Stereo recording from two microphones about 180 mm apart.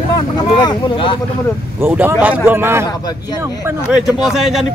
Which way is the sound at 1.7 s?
10° right (ahead or behind).